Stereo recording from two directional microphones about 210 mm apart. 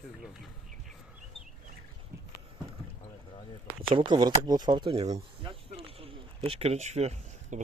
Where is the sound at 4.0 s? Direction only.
20° right (ahead or behind).